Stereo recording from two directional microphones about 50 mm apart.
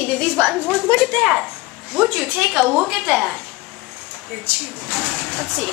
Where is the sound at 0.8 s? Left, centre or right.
Left.